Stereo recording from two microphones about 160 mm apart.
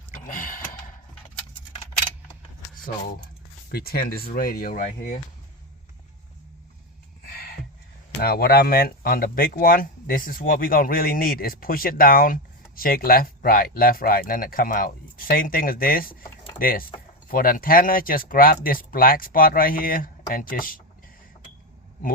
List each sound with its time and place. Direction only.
0.1 s gasp: 60° left (ahead or behind)
3.7 s speech: 75° left (ahead or behind); by 5.2 s 50° left (ahead or behind)
7.3 s a sound: 70° left (ahead or behind)
8.2 s speech: 75° left (ahead or behind)